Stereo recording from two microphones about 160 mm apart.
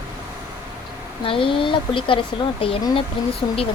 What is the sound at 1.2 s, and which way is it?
Speech, 35° left (ahead or behind).